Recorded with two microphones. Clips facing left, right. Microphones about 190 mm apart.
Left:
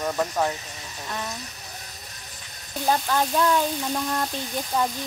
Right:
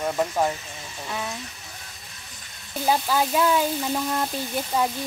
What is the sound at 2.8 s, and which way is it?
Speech, 5° right (ahead or behind).